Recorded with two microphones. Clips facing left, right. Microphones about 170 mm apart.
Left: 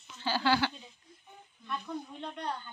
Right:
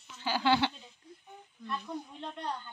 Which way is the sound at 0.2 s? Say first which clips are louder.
Right 1 dB; 15° right (ahead or behind).